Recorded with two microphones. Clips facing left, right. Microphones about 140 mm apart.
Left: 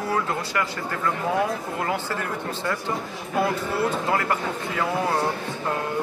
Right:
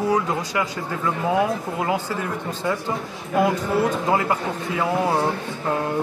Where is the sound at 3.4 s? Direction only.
15° right (ahead or behind).